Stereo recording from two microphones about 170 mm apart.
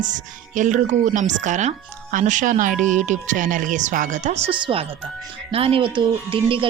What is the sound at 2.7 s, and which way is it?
Speech, 5° left (ahead or behind).